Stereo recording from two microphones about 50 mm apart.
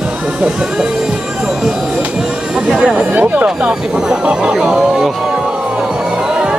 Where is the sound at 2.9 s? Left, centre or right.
Right.